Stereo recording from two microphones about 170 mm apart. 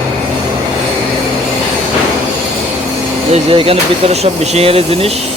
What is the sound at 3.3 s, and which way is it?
Speech, 35° right (ahead or behind).